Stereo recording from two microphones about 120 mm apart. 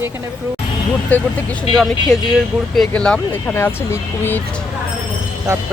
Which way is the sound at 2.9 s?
5° left (ahead or behind).